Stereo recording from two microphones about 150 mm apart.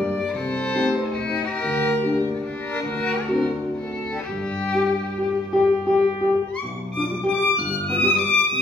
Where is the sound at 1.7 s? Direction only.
10° left (ahead or behind).